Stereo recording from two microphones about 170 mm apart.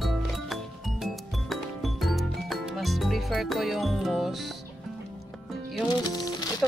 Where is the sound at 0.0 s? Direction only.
Centre (ahead or behind).